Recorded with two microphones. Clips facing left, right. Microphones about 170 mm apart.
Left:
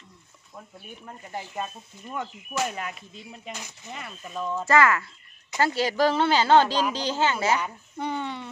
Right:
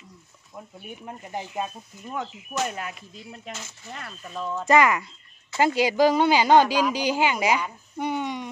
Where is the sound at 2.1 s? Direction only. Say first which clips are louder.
Right 1 dB; centre (ahead or behind).